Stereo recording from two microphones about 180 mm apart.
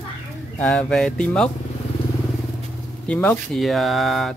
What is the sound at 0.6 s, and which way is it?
Speech, 5° left (ahead or behind).